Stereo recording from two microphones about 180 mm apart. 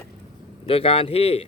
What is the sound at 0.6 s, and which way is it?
Speech, 30° left (ahead or behind).